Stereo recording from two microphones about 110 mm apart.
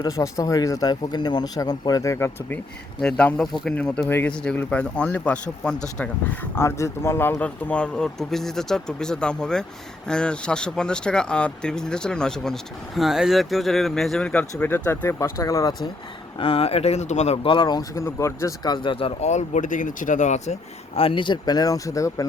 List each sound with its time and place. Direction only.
0.0 s a man's voice: 30° left (ahead or behind)
3.0 s speech: 10° left (ahead or behind)
6.6 s speech: 25° left (ahead or behind); by 14.4 s 10° left (ahead or behind)
14.6 s speech: 20° left (ahead or behind)
16.4 s speech: 60° left (ahead or behind); by 17.4 s 85° left
17.4 s speech: 50° left (ahead or behind); by 22.3 s 30° left (ahead or behind)